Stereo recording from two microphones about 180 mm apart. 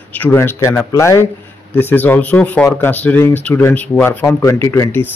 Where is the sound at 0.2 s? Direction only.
15° left (ahead or behind).